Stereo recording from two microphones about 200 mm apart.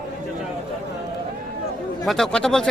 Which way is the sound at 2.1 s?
Centre (ahead or behind).